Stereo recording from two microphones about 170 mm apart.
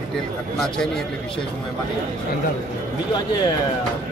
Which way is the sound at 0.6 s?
5° left (ahead or behind).